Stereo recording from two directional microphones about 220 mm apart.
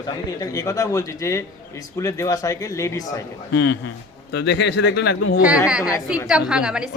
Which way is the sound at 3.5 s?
55° left (ahead or behind).